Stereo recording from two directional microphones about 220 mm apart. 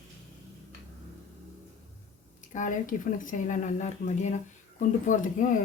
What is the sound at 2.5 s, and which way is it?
Speech, 35° left (ahead or behind).